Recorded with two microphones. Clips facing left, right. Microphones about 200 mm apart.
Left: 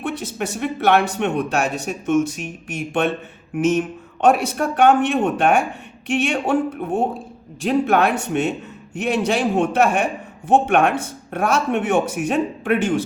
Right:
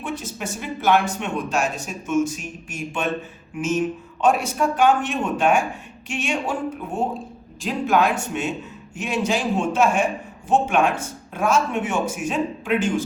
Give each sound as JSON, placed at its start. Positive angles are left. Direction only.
{"t": 0.0, "sound": "speech", "side_deg": 65}